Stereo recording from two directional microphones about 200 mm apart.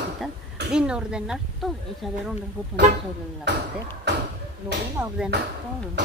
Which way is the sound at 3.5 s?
60° right (ahead or behind).